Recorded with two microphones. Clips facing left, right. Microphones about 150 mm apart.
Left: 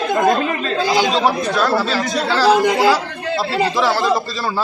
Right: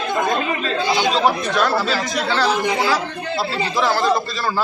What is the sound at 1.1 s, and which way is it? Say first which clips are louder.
Speech: left 1 dB; centre (ahead or behind).